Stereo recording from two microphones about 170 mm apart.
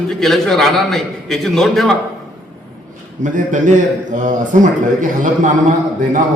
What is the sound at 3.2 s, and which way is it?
A man's voice, 50° right (ahead or behind).